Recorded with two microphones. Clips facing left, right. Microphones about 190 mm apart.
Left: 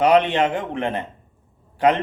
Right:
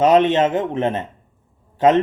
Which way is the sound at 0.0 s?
20° right (ahead or behind).